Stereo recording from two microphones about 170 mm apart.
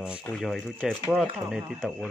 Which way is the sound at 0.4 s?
Centre (ahead or behind).